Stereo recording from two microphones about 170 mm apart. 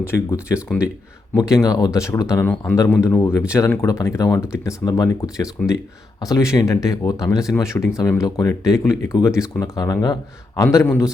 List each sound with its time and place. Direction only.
0.0 s speech: 15° left (ahead or behind)
1.6 s speech: 20° left (ahead or behind)